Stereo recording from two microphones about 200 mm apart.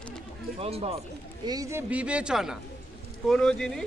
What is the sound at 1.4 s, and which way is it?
Speech, 15° right (ahead or behind).